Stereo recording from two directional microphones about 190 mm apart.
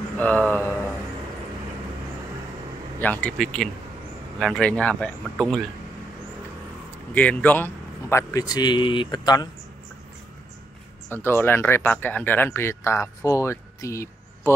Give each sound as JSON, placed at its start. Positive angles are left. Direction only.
{"t": 0.2, "sound": "speech", "side_deg": 10}
{"t": 3.0, "sound": "speech", "side_deg": 5}
{"t": 7.2, "sound": "a man's voice", "side_deg": 10}
{"t": 11.1, "sound": "speech", "side_deg": 10}